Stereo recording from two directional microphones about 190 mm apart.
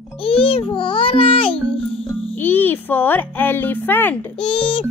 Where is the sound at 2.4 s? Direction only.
10° left (ahead or behind).